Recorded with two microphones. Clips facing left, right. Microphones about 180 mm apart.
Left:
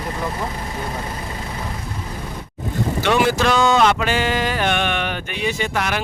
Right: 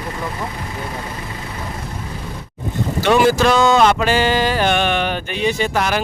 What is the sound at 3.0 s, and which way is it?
Speech, 40° right (ahead or behind).